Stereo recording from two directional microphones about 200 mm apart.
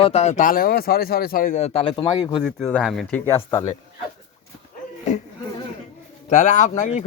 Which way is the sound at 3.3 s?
25° left (ahead or behind).